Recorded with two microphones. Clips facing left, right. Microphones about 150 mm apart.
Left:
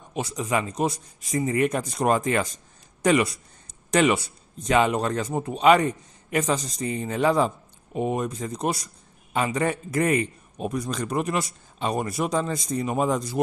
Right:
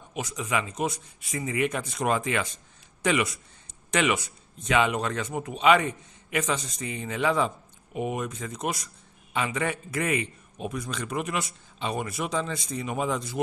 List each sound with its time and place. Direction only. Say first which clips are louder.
0.1 s a man's voice: left 4 dB; 35° left (ahead or behind)